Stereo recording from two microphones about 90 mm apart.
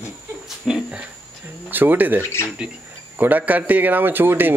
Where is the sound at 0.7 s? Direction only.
10° right (ahead or behind).